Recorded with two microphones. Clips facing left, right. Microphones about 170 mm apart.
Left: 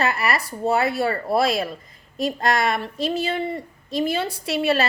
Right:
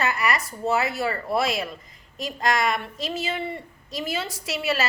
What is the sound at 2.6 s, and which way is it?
A woman's voice, 30° left (ahead or behind).